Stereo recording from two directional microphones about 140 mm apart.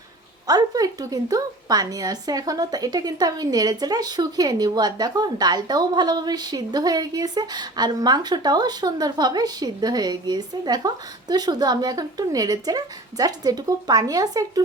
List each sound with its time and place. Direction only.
0.4 s a woman's voice: 25° right (ahead or behind)